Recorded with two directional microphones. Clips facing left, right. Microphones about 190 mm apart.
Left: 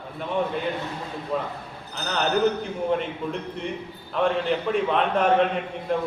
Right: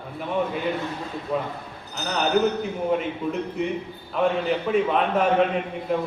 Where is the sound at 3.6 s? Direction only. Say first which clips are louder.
Right 5 dB; 5° right (ahead or behind).